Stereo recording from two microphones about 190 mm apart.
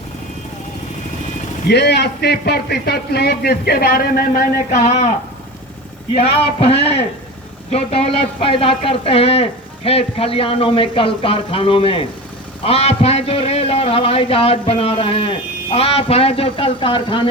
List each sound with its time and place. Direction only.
1.6 s a man's voice: 60° left (ahead or behind)
4.8 s a man's voice: 35° left (ahead or behind)
6.3 s a man's voice: 30° left (ahead or behind)